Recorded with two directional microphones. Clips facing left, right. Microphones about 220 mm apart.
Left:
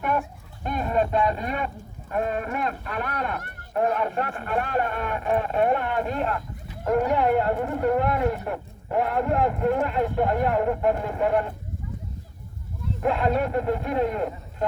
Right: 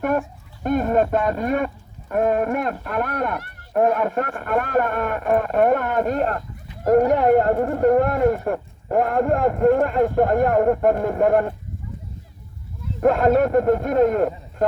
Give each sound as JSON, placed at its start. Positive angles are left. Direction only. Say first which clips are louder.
{"t": 0.0, "sound": "speech", "louder": "right 5 dB", "side_deg": -45}
{"t": 13.0, "sound": "speech", "louder": "right 7 dB", "side_deg": -45}